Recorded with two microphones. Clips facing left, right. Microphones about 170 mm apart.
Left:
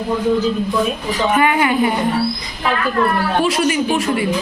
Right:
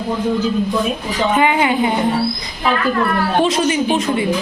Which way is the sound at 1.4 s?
20° right (ahead or behind).